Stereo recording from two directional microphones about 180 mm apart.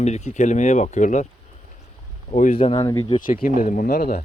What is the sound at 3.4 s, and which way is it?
Speech, 50° left (ahead or behind).